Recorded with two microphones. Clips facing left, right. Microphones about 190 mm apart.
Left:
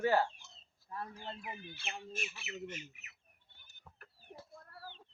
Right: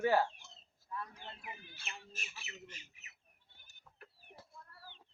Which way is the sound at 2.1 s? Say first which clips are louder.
Left 9 dB; 35° right (ahead or behind).